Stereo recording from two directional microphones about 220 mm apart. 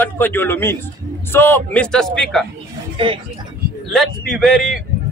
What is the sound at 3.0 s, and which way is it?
Speech, 25° right (ahead or behind).